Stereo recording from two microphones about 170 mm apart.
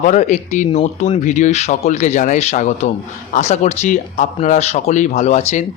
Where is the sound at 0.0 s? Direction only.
45° left (ahead or behind).